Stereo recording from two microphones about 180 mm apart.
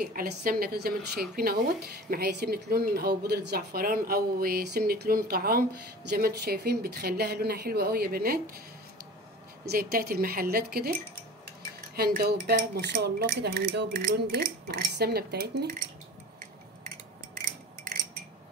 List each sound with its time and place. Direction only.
0.0 s a woman's voice: 55° right (ahead or behind)
9.7 s a woman's voice: 55° right (ahead or behind)
11.9 s a woman's voice: 60° right (ahead or behind)